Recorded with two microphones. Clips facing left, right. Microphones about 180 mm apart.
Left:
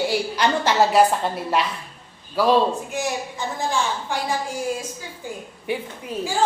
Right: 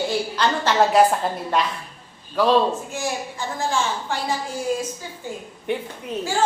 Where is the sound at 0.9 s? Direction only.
Centre (ahead or behind).